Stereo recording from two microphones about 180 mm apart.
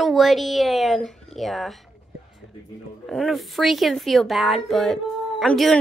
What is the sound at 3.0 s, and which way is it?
Speech, centre (ahead or behind).